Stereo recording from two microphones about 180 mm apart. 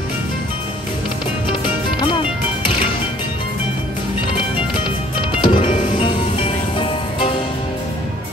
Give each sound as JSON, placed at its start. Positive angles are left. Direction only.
{"t": 2.0, "sound": "music", "side_deg": 30}
{"t": 5.3, "sound": "music", "side_deg": 30}